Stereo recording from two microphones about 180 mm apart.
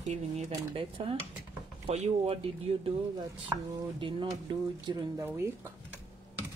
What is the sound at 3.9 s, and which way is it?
Speech, 30° right (ahead or behind).